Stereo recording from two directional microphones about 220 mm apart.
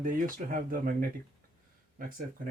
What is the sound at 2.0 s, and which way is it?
Speech, 40° right (ahead or behind).